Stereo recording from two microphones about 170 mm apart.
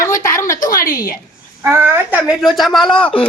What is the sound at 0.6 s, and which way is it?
Speech, 55° left (ahead or behind).